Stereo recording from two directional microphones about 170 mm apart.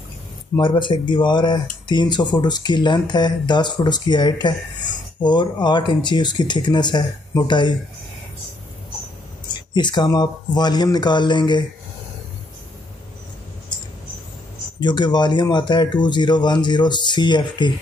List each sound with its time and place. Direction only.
0.6 s speech: 30° left (ahead or behind)
9.8 s speech: 25° left (ahead or behind)
14.8 s speech: 25° left (ahead or behind)